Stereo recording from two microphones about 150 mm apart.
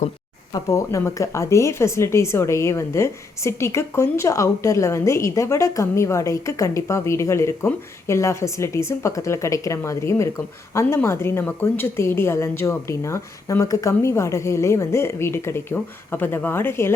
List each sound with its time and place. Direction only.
0.5 s a woman's voice: 20° left (ahead or behind)